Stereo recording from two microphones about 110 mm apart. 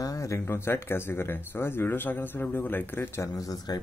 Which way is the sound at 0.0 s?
30° left (ahead or behind).